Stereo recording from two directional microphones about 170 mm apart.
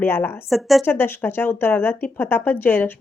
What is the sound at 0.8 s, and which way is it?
A woman's voice, 10° left (ahead or behind).